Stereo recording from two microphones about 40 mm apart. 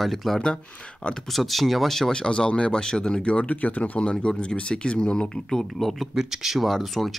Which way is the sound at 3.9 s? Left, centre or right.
Left.